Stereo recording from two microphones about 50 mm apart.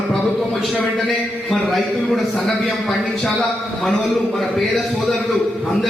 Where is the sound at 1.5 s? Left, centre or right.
Centre.